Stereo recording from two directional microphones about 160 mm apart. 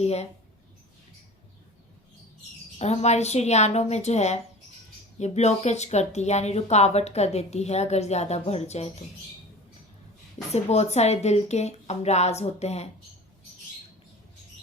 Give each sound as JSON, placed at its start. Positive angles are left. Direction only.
{"t": 0.0, "sound": "speech", "side_deg": 40}
{"t": 2.7, "sound": "speech", "side_deg": 40}
{"t": 10.5, "sound": "speech", "side_deg": 45}